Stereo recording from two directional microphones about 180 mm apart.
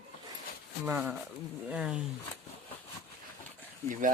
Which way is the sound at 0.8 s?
10° right (ahead or behind).